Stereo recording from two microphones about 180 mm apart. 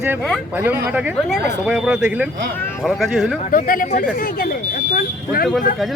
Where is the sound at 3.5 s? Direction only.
50° left (ahead or behind).